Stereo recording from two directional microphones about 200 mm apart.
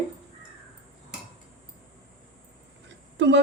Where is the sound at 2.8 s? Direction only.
60° right (ahead or behind).